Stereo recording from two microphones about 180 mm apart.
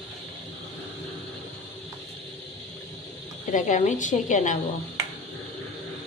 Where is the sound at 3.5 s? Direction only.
45° left (ahead or behind).